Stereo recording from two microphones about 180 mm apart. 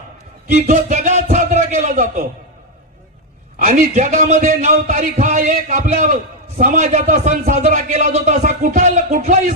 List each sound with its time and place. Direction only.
0.4 s a man's voice: 40° right (ahead or behind)
3.6 s a man's voice: 45° right (ahead or behind)